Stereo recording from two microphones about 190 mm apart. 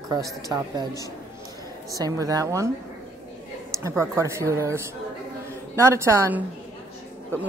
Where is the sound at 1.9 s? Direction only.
20° right (ahead or behind).